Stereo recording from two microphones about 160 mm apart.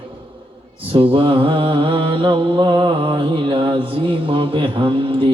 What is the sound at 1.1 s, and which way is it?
Mantra, 35° right (ahead or behind).